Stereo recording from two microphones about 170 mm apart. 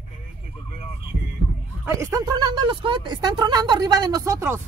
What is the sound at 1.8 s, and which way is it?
Speech, 15° right (ahead or behind).